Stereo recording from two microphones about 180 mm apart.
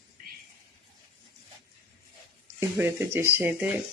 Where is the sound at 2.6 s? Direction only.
10° right (ahead or behind).